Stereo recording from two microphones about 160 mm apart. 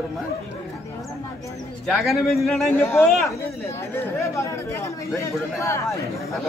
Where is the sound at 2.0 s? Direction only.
Centre (ahead or behind).